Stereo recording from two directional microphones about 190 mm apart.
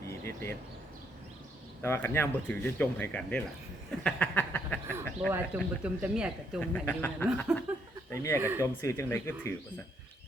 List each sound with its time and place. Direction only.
0.0 s a sound: 15° left (ahead or behind)
1.8 s speech: 10° left (ahead or behind)
5.8 s speech: 5° right (ahead or behind)
6.6 s speech: 10° left (ahead or behind)
8.4 s speech: 10° right (ahead or behind)
8.6 s speech: 15° left (ahead or behind)